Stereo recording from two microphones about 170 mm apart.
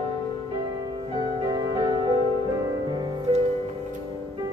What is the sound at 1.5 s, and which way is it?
Music, 25° right (ahead or behind).